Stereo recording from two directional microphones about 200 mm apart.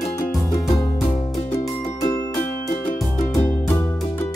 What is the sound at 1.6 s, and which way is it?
Music, 15° left (ahead or behind).